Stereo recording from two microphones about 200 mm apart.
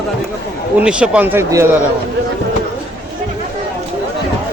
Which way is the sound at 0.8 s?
5° right (ahead or behind).